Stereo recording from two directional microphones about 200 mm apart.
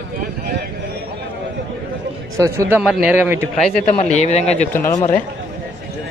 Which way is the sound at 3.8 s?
35° left (ahead or behind).